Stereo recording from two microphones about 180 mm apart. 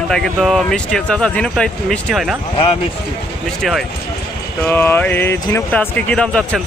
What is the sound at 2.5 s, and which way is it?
Speech, 30° left (ahead or behind).